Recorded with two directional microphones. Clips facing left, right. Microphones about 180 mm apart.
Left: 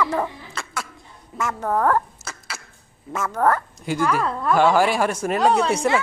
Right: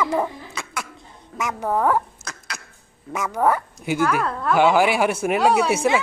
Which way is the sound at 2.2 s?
5° left (ahead or behind).